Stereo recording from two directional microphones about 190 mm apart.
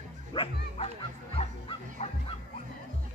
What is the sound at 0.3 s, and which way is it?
Speech, 30° left (ahead or behind).